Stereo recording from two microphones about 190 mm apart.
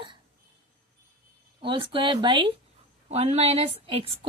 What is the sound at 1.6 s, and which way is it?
A woman's voice, 25° right (ahead or behind).